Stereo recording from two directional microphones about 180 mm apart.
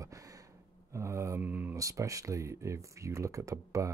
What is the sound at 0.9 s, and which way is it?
Speech, 15° right (ahead or behind).